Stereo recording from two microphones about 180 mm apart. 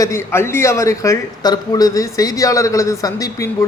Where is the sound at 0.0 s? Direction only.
15° left (ahead or behind).